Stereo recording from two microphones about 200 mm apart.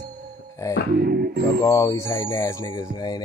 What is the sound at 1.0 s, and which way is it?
Speech, 50° right (ahead or behind).